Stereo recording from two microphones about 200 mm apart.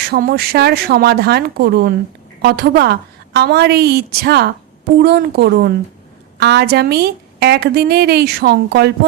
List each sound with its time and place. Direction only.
0.1 s a woman's voice: 50° right (ahead or behind)